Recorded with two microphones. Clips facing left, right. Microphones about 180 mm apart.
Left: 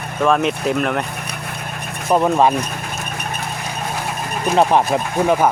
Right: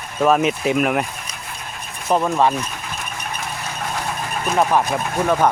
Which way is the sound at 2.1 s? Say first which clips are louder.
Left 3 dB; 15° left (ahead or behind).